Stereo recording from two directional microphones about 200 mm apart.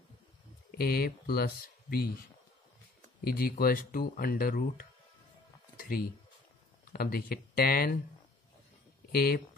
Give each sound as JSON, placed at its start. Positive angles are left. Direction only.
{"t": 0.7, "sound": "speech", "side_deg": 50}
{"t": 3.3, "sound": "speech", "side_deg": 50}
{"t": 9.1, "sound": "speech", "side_deg": 50}